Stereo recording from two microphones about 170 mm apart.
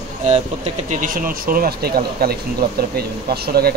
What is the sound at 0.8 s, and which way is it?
Speech, 55° right (ahead or behind).